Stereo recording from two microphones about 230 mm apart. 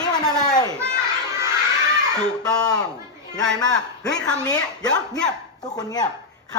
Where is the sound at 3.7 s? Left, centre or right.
Centre.